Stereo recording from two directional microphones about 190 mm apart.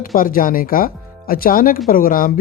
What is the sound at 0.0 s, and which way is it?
Speech, 45° left (ahead or behind).